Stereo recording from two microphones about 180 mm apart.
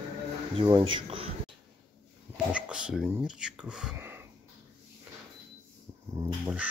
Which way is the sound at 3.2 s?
5° right (ahead or behind).